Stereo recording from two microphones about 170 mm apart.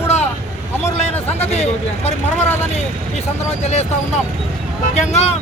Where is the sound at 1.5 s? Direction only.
40° left (ahead or behind).